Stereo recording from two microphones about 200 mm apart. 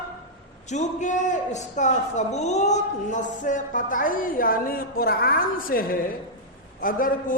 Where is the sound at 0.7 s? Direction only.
35° left (ahead or behind).